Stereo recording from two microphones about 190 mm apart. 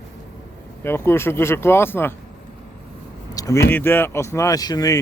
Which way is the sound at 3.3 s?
15° left (ahead or behind).